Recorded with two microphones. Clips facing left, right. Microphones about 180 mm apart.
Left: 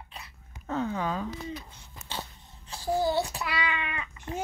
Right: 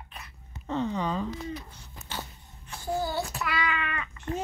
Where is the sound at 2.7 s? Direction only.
30° left (ahead or behind).